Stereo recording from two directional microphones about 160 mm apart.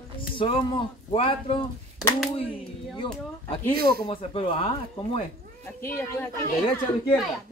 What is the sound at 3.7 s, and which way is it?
Speech, 75° right (ahead or behind).